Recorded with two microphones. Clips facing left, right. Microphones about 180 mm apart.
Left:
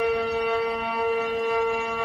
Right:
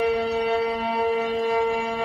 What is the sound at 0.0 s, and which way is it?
Music, 30° right (ahead or behind).